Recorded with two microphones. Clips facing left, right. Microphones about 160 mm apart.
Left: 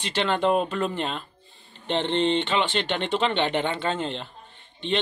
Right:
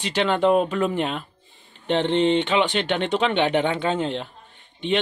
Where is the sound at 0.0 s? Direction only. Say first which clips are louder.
Right 3 dB; 5° right (ahead or behind).